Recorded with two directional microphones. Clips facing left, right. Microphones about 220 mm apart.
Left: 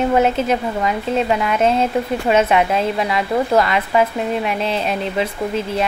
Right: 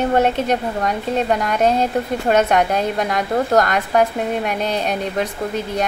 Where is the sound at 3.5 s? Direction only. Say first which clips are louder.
Even; 45° right (ahead or behind).